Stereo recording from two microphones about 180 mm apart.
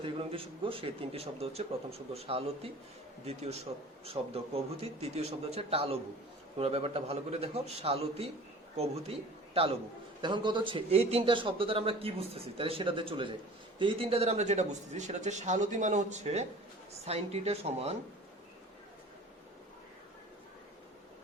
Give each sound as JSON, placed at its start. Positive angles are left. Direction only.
{"t": 0.0, "sound": "a man's voice", "side_deg": -30}
{"t": 10.2, "sound": "a man's voice", "side_deg": -25}